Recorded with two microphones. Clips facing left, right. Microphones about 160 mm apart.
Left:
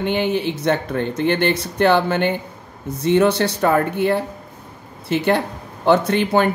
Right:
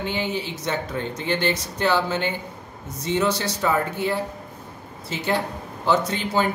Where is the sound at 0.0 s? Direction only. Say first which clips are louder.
Left 7 dB; 60° left (ahead or behind).